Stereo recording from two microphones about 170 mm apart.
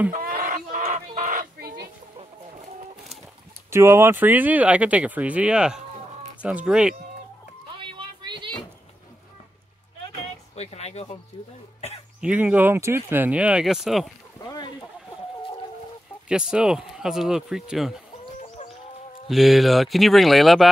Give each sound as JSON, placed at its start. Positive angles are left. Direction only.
{"t": 0.1, "sound": "livestock", "side_deg": -55}
{"t": 3.7, "sound": "speech", "side_deg": -15}
{"t": 7.7, "sound": "a sound", "side_deg": -30}
{"t": 10.5, "sound": "speech", "side_deg": 40}
{"t": 12.2, "sound": "speech", "side_deg": -10}
{"t": 16.3, "sound": "speech", "side_deg": -5}
{"t": 19.2, "sound": "speech", "side_deg": 0}